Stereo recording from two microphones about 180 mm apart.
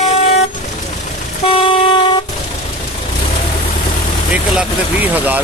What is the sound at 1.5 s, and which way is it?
Vehicle, 30° left (ahead or behind).